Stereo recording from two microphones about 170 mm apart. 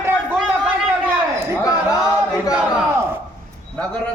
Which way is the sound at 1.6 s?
20° left (ahead or behind).